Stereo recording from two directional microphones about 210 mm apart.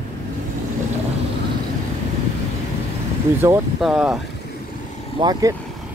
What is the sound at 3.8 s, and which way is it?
Speech, centre (ahead or behind).